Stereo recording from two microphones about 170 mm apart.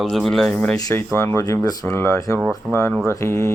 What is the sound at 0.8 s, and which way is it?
Mantra, 15° left (ahead or behind).